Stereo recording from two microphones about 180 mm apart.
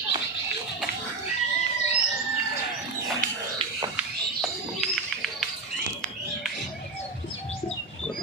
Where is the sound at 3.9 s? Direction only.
Centre (ahead or behind).